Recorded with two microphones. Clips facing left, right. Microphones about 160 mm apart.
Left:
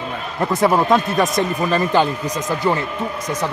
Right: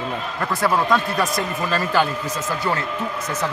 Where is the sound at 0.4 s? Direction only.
20° left (ahead or behind).